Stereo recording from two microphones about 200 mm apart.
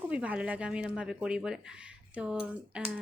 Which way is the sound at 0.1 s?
5° right (ahead or behind).